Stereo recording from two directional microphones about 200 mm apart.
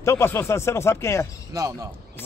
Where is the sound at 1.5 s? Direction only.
15° right (ahead or behind).